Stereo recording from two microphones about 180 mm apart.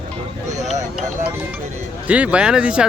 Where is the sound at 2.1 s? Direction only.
5° right (ahead or behind).